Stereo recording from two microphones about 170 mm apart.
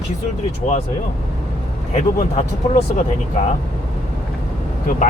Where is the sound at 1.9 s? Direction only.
40° left (ahead or behind).